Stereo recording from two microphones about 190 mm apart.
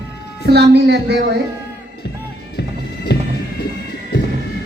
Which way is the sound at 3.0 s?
60° left (ahead or behind).